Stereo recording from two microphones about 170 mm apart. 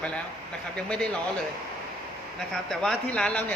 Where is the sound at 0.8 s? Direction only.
5° left (ahead or behind).